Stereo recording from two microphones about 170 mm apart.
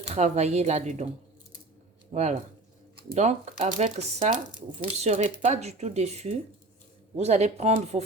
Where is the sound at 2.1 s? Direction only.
40° right (ahead or behind).